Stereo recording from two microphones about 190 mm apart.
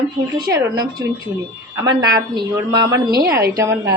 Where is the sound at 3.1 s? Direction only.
55° right (ahead or behind).